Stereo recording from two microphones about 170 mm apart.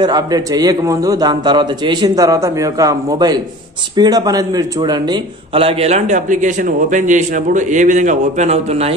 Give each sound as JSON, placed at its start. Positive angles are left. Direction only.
{"t": 0.0, "sound": "a man's voice", "side_deg": -25}
{"t": 5.5, "sound": "a man's voice", "side_deg": -35}